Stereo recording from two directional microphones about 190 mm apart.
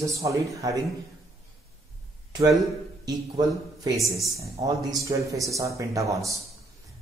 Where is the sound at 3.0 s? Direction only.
20° right (ahead or behind).